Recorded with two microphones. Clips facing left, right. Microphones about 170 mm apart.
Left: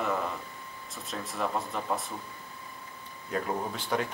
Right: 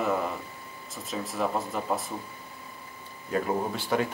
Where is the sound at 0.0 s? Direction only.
5° right (ahead or behind).